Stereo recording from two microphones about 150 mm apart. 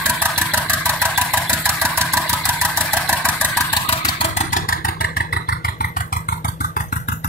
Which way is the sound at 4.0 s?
30° left (ahead or behind).